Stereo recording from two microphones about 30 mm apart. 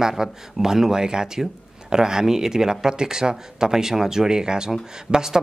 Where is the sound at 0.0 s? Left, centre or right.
Centre.